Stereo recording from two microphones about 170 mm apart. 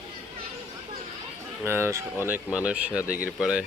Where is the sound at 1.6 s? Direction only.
15° right (ahead or behind).